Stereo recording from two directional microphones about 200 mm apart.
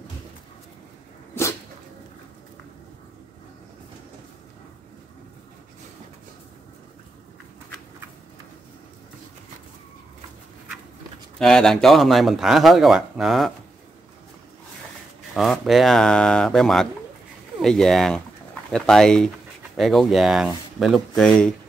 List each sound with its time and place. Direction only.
11.3 s speech: 5° left (ahead or behind)
15.3 s speech: centre (ahead or behind)